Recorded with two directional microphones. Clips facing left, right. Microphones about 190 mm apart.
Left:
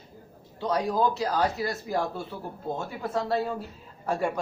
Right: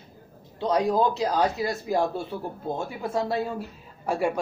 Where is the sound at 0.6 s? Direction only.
20° right (ahead or behind).